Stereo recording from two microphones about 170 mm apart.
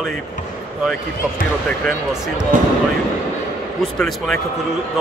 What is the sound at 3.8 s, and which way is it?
Speech, centre (ahead or behind).